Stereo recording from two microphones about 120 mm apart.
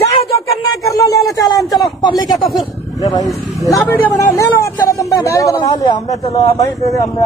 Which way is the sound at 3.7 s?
15° left (ahead or behind).